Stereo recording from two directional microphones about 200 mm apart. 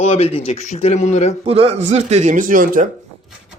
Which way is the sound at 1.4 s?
30° right (ahead or behind).